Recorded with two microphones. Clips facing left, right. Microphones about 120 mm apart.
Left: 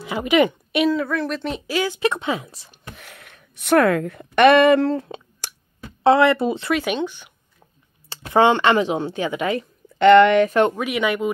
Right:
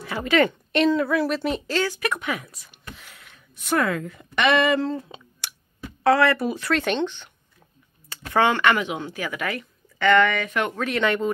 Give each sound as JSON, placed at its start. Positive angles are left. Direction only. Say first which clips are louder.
{"t": 0.0, "sound": "a woman's voice", "louder": "left 3 dB", "side_deg": 15}
{"t": 0.8, "sound": "speech", "louder": "right 1 dB", "side_deg": 0}
{"t": 1.7, "sound": "speech", "louder": "left 4 dB", "side_deg": 10}
{"t": 2.0, "sound": "speech", "louder": "left 5 dB", "side_deg": 25}
{"t": 2.9, "sound": "speech", "louder": "left 2 dB", "side_deg": 60}
{"t": 5.4, "sound": "clicking", "louder": "left 2 dB", "side_deg": 40}
{"t": 6.0, "sound": "speech", "louder": "left 4 dB", "side_deg": 25}
{"t": 6.7, "sound": "speech", "louder": "left 1 dB", "side_deg": 5}
{"t": 8.1, "sound": "speech", "louder": "left 5 dB", "side_deg": 25}
{"t": 10.8, "sound": "speech", "louder": "left 1 dB", "side_deg": 10}